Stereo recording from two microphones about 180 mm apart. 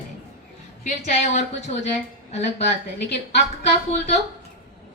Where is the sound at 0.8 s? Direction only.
40° left (ahead or behind).